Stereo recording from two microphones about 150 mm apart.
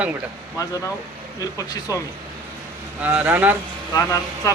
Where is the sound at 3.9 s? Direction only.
20° left (ahead or behind).